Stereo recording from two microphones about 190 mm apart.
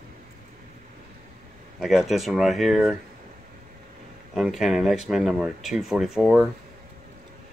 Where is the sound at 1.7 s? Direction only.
Centre (ahead or behind).